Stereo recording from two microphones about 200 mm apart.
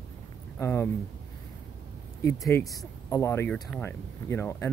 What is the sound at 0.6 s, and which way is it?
Speech, 15° left (ahead or behind).